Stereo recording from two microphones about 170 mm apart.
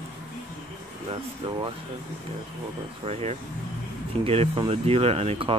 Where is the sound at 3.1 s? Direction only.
40° right (ahead or behind).